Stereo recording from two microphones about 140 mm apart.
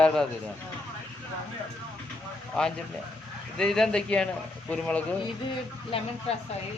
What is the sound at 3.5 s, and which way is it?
A man's voice, 5° left (ahead or behind).